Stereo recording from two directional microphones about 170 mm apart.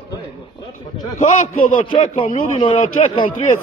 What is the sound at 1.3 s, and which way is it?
Speech, 50° left (ahead or behind).